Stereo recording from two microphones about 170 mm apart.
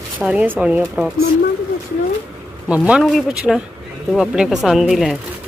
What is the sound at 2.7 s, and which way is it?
Speech, 5° right (ahead or behind).